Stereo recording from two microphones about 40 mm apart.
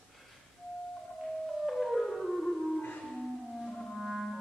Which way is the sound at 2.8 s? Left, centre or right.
Left.